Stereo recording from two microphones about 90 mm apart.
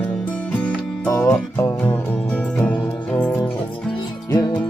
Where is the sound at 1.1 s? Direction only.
40° left (ahead or behind).